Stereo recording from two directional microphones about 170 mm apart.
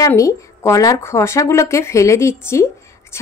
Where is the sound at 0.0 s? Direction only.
20° left (ahead or behind).